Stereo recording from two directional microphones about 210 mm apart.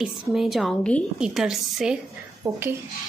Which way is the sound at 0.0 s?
Centre (ahead or behind).